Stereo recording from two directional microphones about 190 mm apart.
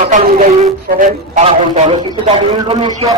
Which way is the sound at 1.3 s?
30° right (ahead or behind).